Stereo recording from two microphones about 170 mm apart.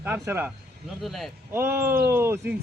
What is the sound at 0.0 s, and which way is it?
Speech, 10° right (ahead or behind).